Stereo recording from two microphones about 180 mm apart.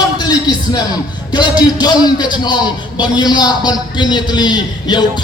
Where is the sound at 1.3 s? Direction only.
25° left (ahead or behind).